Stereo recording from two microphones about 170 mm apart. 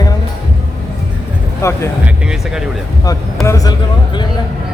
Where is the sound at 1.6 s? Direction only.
15° left (ahead or behind).